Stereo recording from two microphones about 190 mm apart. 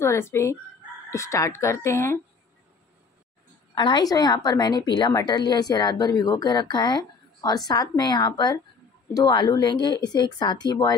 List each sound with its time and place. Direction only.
0.0 s speech: 15° left (ahead or behind)
3.7 s a woman's voice: 25° left (ahead or behind)